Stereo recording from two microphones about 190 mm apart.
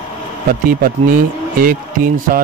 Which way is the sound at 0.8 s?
50° right (ahead or behind).